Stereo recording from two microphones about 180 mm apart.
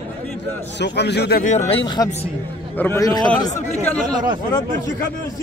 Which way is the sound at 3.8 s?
10° left (ahead or behind).